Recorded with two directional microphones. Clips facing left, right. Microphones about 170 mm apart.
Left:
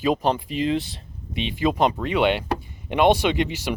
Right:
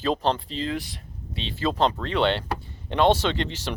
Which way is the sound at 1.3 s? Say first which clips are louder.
Left 3 dB; 15° left (ahead or behind).